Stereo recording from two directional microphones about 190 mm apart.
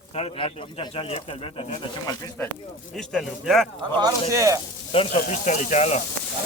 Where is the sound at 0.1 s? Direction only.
30° left (ahead or behind).